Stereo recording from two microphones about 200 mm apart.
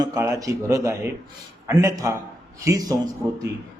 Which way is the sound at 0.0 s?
15° right (ahead or behind).